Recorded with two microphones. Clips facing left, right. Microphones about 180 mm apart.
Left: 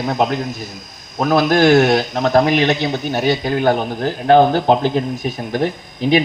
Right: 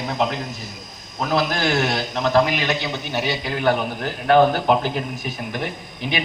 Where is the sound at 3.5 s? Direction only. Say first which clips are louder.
Left 4 dB; 35° left (ahead or behind).